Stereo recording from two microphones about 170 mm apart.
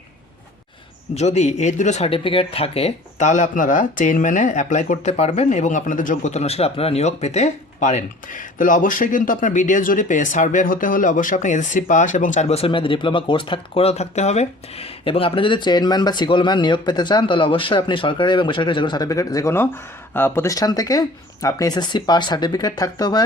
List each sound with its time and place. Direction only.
1.1 s speech: 40° left (ahead or behind); by 23.2 s 25° left (ahead or behind)